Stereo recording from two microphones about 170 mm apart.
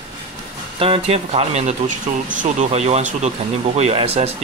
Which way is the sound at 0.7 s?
35° right (ahead or behind).